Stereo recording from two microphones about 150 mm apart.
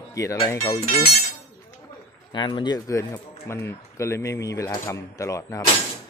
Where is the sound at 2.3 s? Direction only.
30° left (ahead or behind).